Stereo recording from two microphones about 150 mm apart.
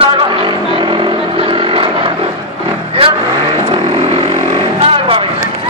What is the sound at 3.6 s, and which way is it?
Vehicle, 35° right (ahead or behind).